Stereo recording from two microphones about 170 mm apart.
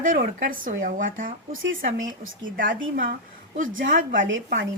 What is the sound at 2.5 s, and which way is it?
Speech, 55° right (ahead or behind).